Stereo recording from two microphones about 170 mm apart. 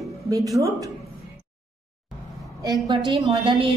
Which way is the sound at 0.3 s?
20° right (ahead or behind).